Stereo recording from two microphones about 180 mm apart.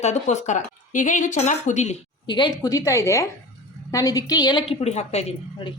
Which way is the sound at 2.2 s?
25° left (ahead or behind).